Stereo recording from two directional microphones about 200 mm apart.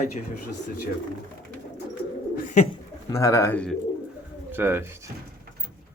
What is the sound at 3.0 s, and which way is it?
Speech, 15° left (ahead or behind).